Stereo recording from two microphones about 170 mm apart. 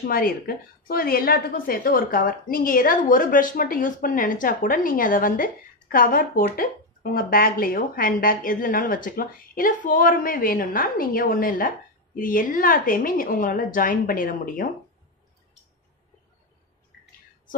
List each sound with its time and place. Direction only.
0.1 s speech: 60° left (ahead or behind)